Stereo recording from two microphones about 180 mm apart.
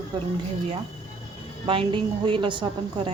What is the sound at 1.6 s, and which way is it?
A woman's voice, 30° right (ahead or behind).